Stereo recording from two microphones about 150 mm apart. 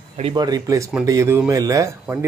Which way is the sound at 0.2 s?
30° right (ahead or behind).